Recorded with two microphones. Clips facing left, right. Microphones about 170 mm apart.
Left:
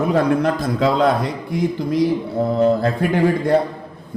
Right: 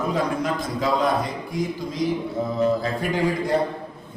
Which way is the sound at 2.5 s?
65° left (ahead or behind).